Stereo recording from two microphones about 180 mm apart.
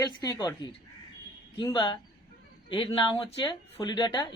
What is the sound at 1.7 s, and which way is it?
Speech, 25° left (ahead or behind).